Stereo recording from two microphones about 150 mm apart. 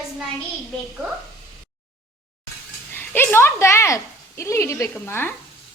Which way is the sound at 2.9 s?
15° left (ahead or behind).